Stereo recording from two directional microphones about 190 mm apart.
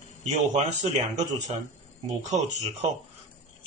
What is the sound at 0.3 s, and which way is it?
Speech, 40° right (ahead or behind).